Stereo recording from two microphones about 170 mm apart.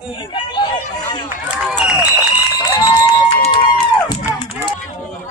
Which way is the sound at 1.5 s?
5° right (ahead or behind).